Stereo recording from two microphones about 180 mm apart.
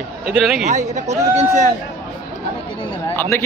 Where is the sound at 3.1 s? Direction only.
10° left (ahead or behind).